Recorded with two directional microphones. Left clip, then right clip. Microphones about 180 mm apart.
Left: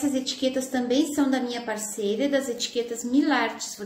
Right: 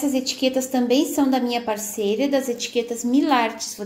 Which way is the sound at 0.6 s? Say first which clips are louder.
Right 5 dB; 30° right (ahead or behind).